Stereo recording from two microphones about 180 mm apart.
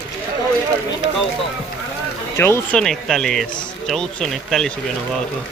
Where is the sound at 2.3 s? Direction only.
15° left (ahead or behind).